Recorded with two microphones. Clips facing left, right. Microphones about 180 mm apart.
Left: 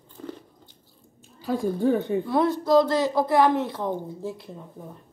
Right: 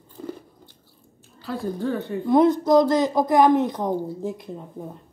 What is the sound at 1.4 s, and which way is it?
Speech, 15° left (ahead or behind).